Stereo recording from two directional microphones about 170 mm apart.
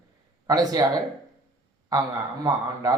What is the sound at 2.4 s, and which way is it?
Speech, 20° right (ahead or behind).